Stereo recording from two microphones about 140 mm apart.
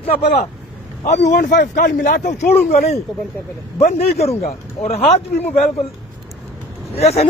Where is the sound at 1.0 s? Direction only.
80° left.